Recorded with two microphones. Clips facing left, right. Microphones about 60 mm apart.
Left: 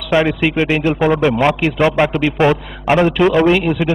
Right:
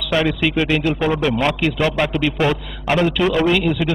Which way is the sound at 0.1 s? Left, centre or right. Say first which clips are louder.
Left 4 dB; left.